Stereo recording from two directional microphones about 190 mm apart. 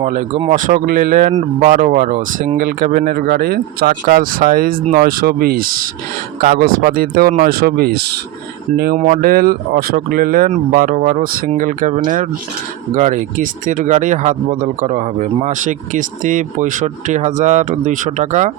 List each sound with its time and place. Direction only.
0.0 s speech: 40° right (ahead or behind)